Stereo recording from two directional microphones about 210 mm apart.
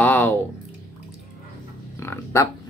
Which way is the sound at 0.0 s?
10° left (ahead or behind).